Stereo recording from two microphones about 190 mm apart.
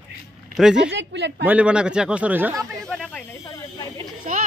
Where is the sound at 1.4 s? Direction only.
5° right (ahead or behind).